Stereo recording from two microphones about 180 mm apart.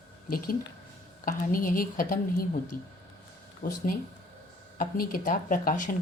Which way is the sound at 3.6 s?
55° left (ahead or behind).